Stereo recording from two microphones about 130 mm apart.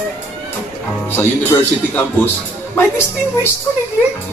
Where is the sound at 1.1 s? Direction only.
15° left (ahead or behind).